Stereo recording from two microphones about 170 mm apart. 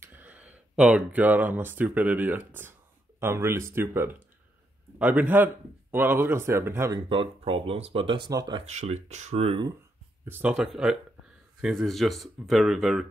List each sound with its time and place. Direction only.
0.0 s speech: 10° right (ahead or behind)
7.1 s speech: 30° right (ahead or behind)
8.6 s speech: 40° right (ahead or behind)
10.2 s speech: 10° right (ahead or behind)